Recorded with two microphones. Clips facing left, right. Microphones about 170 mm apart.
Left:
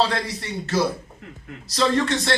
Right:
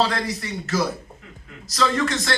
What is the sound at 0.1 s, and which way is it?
A man's voice, 30° left (ahead or behind).